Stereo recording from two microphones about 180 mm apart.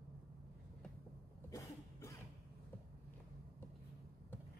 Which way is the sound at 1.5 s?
20° left (ahead or behind).